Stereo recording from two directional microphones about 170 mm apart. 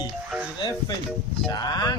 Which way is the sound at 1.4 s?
25° left (ahead or behind).